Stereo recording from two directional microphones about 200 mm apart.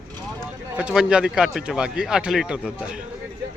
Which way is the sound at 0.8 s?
5° right (ahead or behind).